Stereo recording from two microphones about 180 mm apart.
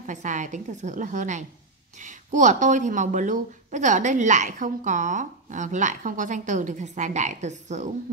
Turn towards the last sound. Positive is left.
turn(degrees=-40)  # may be behind; listen again after turning